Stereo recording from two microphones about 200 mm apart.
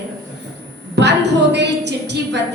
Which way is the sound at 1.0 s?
60° right (ahead or behind).